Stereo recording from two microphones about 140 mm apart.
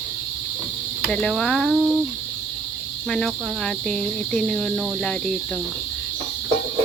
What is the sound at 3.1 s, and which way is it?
Speech, 5° left (ahead or behind).